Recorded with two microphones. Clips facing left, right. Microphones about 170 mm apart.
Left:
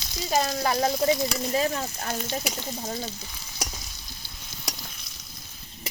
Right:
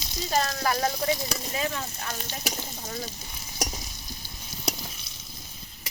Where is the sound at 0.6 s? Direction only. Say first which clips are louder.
Left 3 dB; 25° left (ahead or behind).